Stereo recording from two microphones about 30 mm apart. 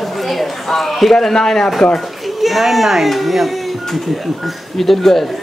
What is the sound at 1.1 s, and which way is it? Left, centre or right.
Speech, centre.